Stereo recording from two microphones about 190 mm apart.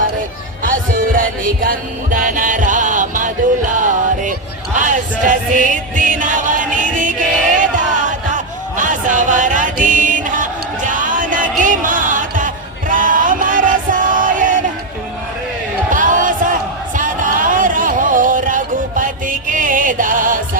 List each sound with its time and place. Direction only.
0.6 s music: 45° right (ahead or behind)
9.8 s a sound: 45° right (ahead or behind)
15.9 s crowd: 45° right (ahead or behind)